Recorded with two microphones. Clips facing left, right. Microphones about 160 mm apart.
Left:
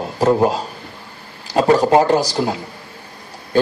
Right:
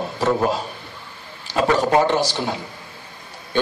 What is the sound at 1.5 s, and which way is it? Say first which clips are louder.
Speech: left 5 dB; 40° left (ahead or behind).